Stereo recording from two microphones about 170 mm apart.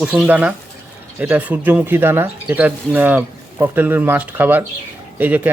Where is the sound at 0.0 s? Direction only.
5° right (ahead or behind).